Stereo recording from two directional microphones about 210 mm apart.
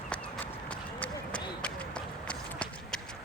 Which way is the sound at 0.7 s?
5° left (ahead or behind).